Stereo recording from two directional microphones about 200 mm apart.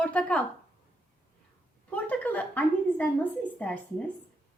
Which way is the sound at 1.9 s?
5° left (ahead or behind).